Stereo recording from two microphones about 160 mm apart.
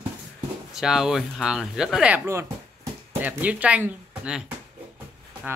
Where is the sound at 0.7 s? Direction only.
5° right (ahead or behind).